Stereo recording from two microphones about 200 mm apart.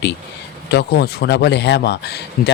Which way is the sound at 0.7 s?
55° left (ahead or behind).